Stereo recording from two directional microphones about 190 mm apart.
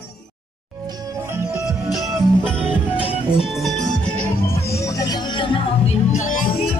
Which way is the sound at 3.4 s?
Centre (ahead or behind).